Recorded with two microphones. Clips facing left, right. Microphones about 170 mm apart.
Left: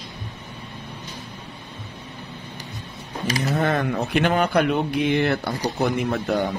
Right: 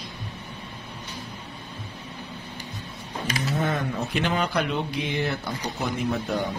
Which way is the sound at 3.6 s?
65° left (ahead or behind).